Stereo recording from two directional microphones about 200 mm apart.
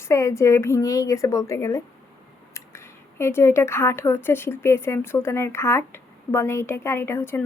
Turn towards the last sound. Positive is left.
turn(degrees=10)  # may be behind; listen again after turning